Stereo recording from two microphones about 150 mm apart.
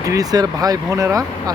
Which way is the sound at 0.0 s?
25° right (ahead or behind).